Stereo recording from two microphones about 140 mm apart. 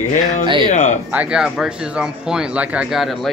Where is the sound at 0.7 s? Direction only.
55° left (ahead or behind).